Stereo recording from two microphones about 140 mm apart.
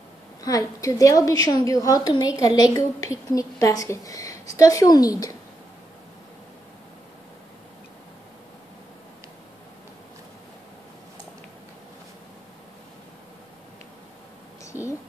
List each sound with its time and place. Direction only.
0.4 s a woman's voice: 25° left (ahead or behind)